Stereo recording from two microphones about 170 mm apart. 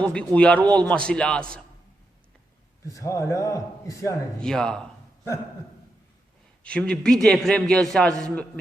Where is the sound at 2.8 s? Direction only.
20° left (ahead or behind).